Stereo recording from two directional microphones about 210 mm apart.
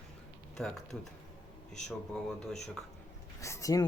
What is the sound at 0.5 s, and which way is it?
Speech, centre (ahead or behind).